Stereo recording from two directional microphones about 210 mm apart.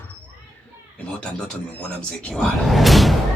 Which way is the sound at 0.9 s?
5° left (ahead or behind).